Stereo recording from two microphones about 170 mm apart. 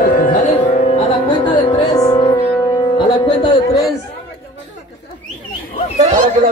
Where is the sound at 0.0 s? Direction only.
55° left (ahead or behind); by 1.5 s 35° left (ahead or behind).